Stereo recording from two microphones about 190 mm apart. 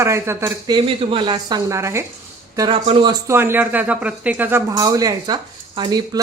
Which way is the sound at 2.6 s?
25° right (ahead or behind).